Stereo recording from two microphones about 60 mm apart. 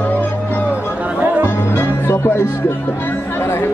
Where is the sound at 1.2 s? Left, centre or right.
Right.